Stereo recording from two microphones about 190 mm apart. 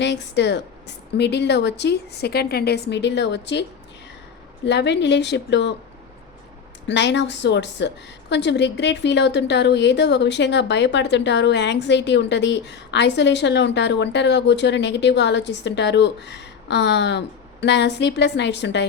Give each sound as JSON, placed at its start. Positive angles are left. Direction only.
{"t": 0.0, "sound": "a woman's voice", "side_deg": 65}
{"t": 6.8, "sound": "a woman's voice", "side_deg": 65}